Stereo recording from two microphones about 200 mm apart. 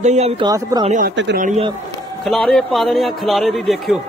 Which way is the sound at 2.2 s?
Centre (ahead or behind).